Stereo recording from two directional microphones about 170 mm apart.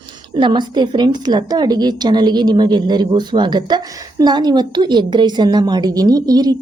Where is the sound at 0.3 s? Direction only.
25° right (ahead or behind).